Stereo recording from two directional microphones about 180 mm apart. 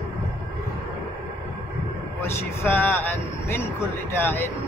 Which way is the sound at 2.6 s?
10° left (ahead or behind).